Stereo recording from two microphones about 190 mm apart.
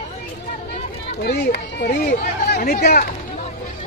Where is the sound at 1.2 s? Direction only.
50° left (ahead or behind).